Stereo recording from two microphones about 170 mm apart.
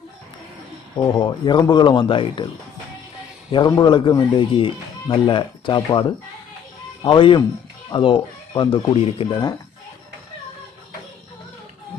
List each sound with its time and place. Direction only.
1.2 s speech: 25° left (ahead or behind)
3.5 s speech: 25° left (ahead or behind)